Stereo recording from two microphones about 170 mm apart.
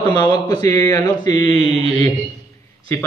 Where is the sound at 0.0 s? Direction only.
25° left (ahead or behind).